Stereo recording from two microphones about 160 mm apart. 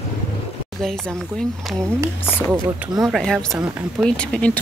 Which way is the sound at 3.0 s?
Centre (ahead or behind).